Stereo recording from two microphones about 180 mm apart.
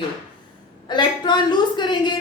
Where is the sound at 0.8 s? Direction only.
25° left (ahead or behind).